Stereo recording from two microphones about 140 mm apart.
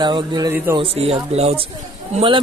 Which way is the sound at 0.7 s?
45° right (ahead or behind).